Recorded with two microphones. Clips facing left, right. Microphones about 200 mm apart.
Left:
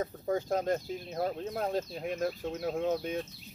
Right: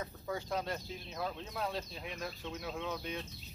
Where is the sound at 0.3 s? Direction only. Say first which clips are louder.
Left 8 dB; 50° left (ahead or behind).